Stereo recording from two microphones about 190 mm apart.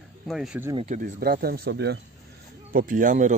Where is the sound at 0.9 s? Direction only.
50° right (ahead or behind).